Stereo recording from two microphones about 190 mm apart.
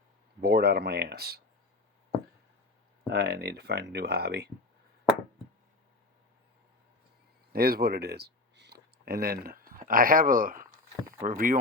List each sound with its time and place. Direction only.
0.4 s speech: 55° right (ahead or behind)
3.1 s speech: 55° right (ahead or behind)
7.5 s speech: 55° right (ahead or behind)